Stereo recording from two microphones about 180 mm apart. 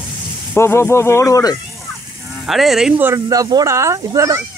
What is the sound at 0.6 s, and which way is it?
A child's voice, 15° left (ahead or behind).